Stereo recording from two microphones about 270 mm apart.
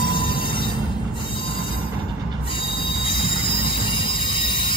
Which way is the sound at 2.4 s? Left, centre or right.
Centre.